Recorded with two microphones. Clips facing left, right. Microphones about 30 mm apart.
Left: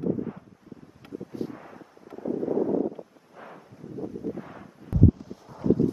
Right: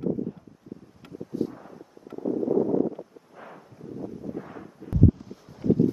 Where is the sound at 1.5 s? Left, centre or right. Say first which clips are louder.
Left 1 dB; left.